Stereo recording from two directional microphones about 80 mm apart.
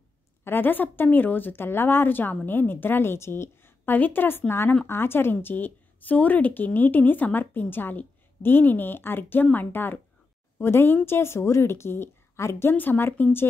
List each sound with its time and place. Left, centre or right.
0.4 s a woman's voice: left